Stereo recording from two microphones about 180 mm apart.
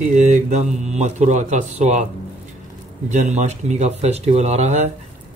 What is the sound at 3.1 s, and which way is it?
Speech, 40° right (ahead or behind).